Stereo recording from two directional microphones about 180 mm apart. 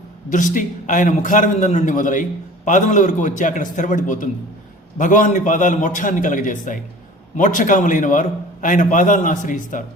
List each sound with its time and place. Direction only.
0.3 s a man's voice: 45° left (ahead or behind)